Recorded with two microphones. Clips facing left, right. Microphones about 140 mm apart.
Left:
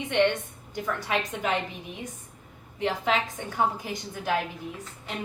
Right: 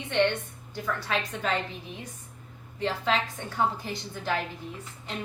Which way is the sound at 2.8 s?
15° left (ahead or behind).